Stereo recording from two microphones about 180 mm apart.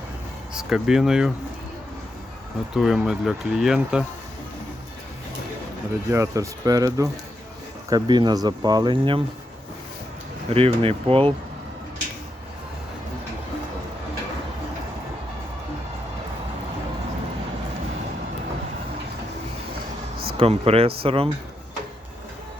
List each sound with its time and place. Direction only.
0.5 s speech: 5° right (ahead or behind)
2.7 s speech: centre (ahead or behind)
6.1 s speech: 15° right (ahead or behind)
10.5 s speech: 30° right (ahead or behind)
20.3 s speech: 30° right (ahead or behind)